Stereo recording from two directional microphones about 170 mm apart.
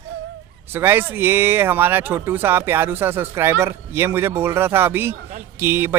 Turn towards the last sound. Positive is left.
turn(degrees=-15)  # may be behind; listen again after turning